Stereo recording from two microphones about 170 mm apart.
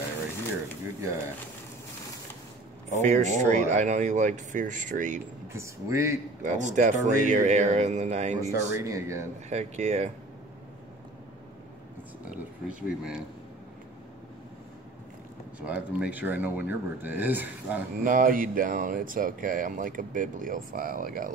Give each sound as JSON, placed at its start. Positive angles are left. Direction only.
{"t": 2.9, "sound": "speech", "side_deg": -45}
{"t": 5.5, "sound": "speech", "side_deg": -15}
{"t": 6.4, "sound": "speech", "side_deg": -45}
{"t": 8.4, "sound": "speech", "side_deg": -20}
{"t": 9.5, "sound": "speech", "side_deg": -40}
{"t": 12.3, "sound": "speech", "side_deg": -5}
{"t": 15.6, "sound": "speech", "side_deg": -5}
{"t": 18.0, "sound": "speech", "side_deg": -55}